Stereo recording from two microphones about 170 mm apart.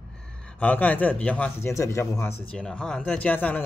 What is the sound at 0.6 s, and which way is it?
Speech, 10° left (ahead or behind).